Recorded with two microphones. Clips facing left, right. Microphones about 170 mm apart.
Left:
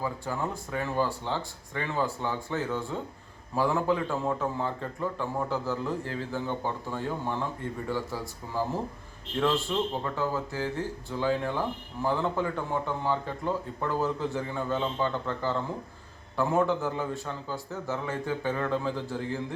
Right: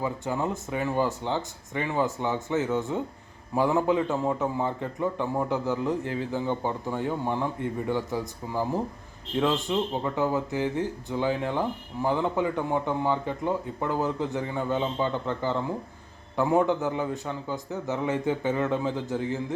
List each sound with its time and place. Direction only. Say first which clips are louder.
0.0 s a man's voice: right 3 dB; 20° right (ahead or behind)